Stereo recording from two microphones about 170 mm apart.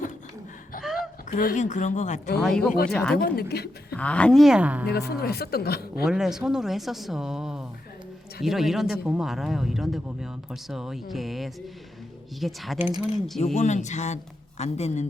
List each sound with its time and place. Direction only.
0.9 s speech: 55° left (ahead or behind)
2.4 s speech: 5° left (ahead or behind)
3.2 s speech: 60° left (ahead or behind)
3.9 s speech: 5° left (ahead or behind); by 4.9 s 10° right (ahead or behind)
4.9 s speech: 70° left (ahead or behind)
6.1 s speech: 5° right (ahead or behind)
13.4 s speech: 45° left (ahead or behind)